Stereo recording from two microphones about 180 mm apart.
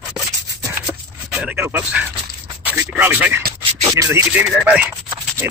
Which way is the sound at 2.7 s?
10° right (ahead or behind).